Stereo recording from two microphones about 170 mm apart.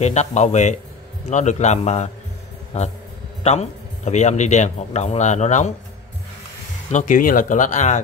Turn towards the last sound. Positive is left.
turn(degrees=45)  # may be behind; listen again after turning